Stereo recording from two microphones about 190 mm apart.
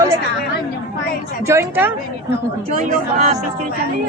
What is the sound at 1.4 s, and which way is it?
Speech, 15° right (ahead or behind).